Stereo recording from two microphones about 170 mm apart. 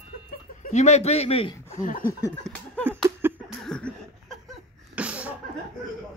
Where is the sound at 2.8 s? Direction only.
15° right (ahead or behind).